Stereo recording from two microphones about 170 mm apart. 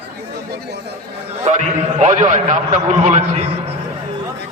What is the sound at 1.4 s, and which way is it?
A man's voice, 45° right (ahead or behind).